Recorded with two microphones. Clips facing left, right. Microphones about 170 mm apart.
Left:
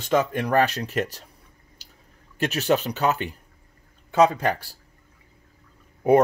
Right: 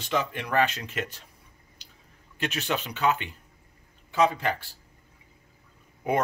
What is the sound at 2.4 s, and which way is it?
Speech, 40° left (ahead or behind).